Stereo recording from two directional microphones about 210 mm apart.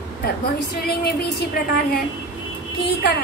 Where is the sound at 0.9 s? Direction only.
50° left (ahead or behind).